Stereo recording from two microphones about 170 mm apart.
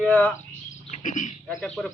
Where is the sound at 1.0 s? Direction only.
50° left (ahead or behind).